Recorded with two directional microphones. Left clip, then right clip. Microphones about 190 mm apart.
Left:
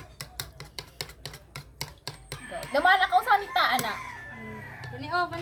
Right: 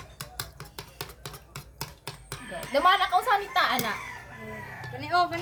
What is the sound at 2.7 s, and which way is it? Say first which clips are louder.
Speech: even; 10° right (ahead or behind).